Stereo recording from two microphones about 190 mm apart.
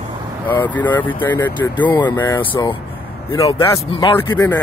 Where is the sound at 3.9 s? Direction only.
25° left (ahead or behind).